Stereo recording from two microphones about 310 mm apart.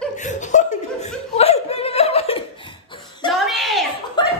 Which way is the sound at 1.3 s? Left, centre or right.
Centre.